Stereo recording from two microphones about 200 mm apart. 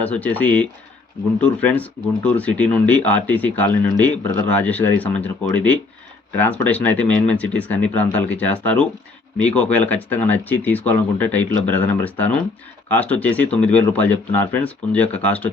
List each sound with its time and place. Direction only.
0.0 s speech: 5° left (ahead or behind)